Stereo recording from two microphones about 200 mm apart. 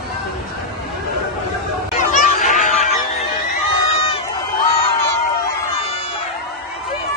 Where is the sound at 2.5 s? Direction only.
40° left (ahead or behind).